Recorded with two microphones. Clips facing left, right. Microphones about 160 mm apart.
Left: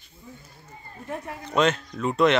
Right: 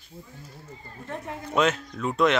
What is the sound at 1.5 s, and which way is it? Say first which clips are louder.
Speech: left 1 dB; 5° right (ahead or behind).